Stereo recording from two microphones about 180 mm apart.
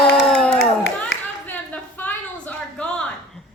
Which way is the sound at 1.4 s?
10° left (ahead or behind).